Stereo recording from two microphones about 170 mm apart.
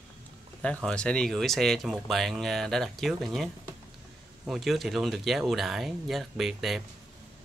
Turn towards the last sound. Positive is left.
turn(degrees=0)  # may be behind; listen again after turning